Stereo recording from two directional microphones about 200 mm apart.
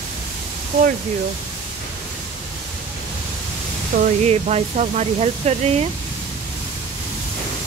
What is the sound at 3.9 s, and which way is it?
Speech, 45° right (ahead or behind).